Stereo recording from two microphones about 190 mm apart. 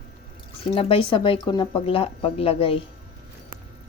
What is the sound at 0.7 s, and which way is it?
Speech, 30° left (ahead or behind).